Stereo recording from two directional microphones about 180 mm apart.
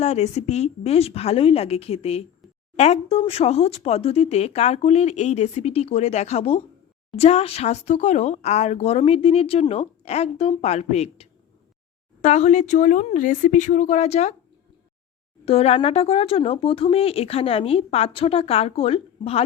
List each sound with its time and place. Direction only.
0.0 s speech: 40° left (ahead or behind)
15.4 s speech: 35° left (ahead or behind)